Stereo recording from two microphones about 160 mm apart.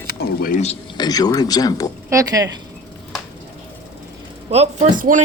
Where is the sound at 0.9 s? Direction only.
25° left (ahead or behind).